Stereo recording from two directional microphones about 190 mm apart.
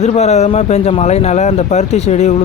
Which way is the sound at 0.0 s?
35° left (ahead or behind).